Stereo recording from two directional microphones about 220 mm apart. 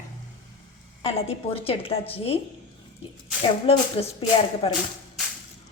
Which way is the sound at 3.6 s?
25° left (ahead or behind).